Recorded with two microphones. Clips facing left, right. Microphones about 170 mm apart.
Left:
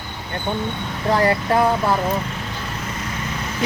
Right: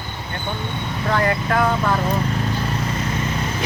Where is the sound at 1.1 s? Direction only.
35° left (ahead or behind).